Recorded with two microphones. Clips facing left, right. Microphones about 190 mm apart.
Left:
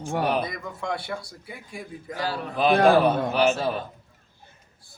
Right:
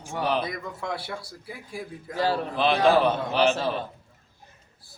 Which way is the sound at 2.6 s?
50° left (ahead or behind).